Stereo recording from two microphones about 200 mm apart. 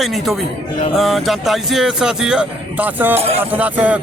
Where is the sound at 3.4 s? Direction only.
10° right (ahead or behind).